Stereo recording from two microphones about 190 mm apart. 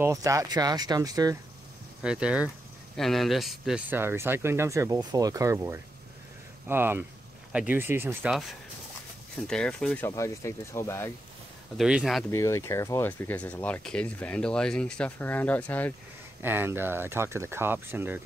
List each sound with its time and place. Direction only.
0.0 s speech: 15° right (ahead or behind)
2.0 s speech: 5° right (ahead or behind)
10.0 s speech: 15° left (ahead or behind)
11.7 s speech: centre (ahead or behind)
12.3 s speech: 15° left (ahead or behind)
16.4 s speech: 10° right (ahead or behind)